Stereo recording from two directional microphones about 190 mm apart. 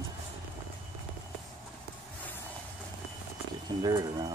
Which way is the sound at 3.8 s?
20° right (ahead or behind).